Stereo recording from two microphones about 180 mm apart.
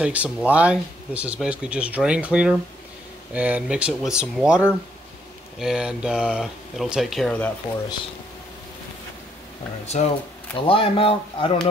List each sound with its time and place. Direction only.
0.0 s speech: 5° right (ahead or behind)
5.6 s speech: 5° right (ahead or behind)
9.8 s speech: 35° left (ahead or behind)